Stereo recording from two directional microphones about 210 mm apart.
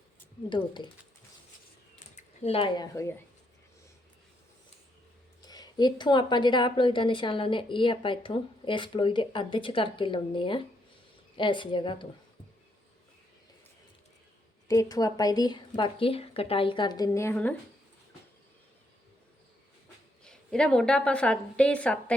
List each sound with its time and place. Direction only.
0.5 s speech: 20° left (ahead or behind)
2.1 s speech: 30° left (ahead or behind)
5.5 s speech: 20° left (ahead or behind)
14.7 s speech: 15° left (ahead or behind)
20.2 s a woman's voice: 5° left (ahead or behind)